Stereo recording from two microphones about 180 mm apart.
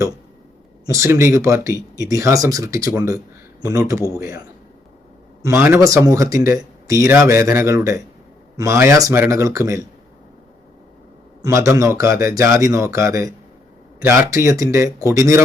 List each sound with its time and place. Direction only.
0.9 s speech: 15° right (ahead or behind)
11.4 s speech: 15° right (ahead or behind)